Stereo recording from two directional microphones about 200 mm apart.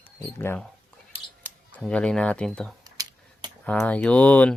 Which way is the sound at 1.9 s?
5° left (ahead or behind).